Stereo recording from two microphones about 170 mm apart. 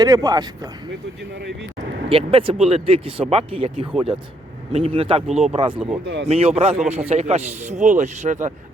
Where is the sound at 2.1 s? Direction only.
30° right (ahead or behind).